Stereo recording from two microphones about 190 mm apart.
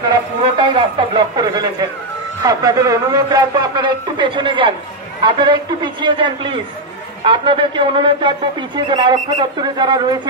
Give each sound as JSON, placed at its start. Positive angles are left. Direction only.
{"t": 0.6, "sound": "a man's voice", "side_deg": -25}